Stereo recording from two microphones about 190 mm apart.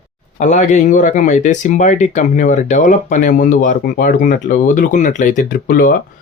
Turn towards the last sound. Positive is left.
turn(degrees=45)  # may be behind; listen again after turning